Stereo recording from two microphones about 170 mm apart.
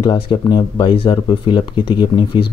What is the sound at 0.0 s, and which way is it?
Speech, 25° left (ahead or behind).